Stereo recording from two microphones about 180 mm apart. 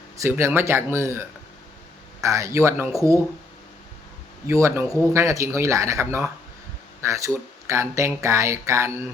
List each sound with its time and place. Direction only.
0.2 s speech: 15° right (ahead or behind)
4.4 s speech: 15° right (ahead or behind)